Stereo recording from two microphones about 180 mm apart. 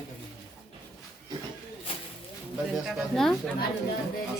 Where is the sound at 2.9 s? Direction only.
Centre (ahead or behind).